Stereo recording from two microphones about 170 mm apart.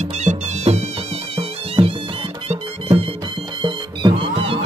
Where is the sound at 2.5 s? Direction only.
35° right (ahead or behind).